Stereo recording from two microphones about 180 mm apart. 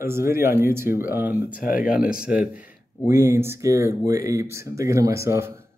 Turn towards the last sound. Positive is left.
turn(degrees=-15)  # may be behind; listen again after turning